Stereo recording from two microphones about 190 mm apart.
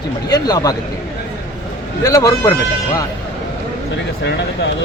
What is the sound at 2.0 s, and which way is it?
Speech, 20° left (ahead or behind).